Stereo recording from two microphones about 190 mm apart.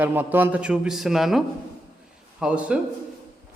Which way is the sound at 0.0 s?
10° right (ahead or behind).